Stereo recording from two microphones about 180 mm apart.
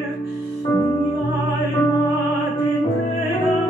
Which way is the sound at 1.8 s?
20° left (ahead or behind).